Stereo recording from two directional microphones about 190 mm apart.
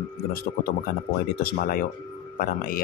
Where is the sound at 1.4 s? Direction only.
50° left (ahead or behind).